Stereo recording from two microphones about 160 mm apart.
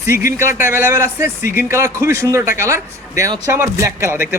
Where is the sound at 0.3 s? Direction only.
15° right (ahead or behind).